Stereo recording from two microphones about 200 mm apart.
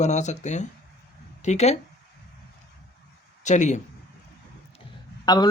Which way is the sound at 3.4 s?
35° left (ahead or behind).